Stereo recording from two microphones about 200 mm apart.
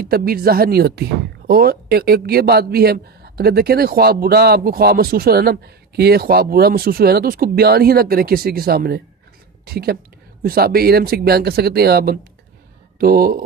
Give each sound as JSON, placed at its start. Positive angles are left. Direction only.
{"t": 0.0, "sound": "a man's voice", "side_deg": -50}
{"t": 10.4, "sound": "a man's voice", "side_deg": -50}